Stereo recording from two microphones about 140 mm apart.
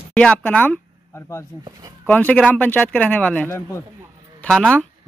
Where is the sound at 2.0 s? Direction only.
10° left (ahead or behind).